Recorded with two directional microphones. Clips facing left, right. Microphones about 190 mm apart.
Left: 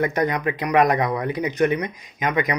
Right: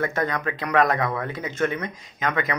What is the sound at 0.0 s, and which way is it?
A man's voice, 15° left (ahead or behind).